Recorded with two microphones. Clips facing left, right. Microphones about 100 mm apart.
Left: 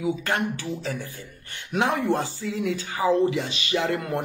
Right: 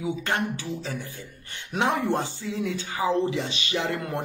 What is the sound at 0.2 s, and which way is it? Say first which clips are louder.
Speech: left 1 dB; 30° right (ahead or behind).